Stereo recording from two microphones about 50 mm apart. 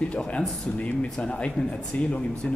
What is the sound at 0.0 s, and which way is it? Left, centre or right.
A man's voice, left.